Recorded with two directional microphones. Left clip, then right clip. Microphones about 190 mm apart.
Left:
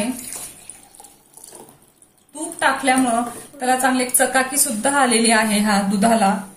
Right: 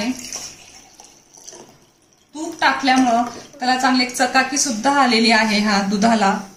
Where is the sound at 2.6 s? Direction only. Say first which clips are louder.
Right 2 dB; 10° left (ahead or behind).